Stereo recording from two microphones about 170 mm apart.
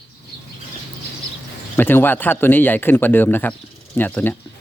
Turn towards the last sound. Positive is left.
turn(degrees=10)  # may be behind; listen again after turning